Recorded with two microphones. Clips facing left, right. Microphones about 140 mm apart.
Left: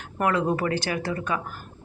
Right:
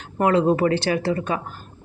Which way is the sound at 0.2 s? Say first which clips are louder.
Right 6 dB; 25° right (ahead or behind).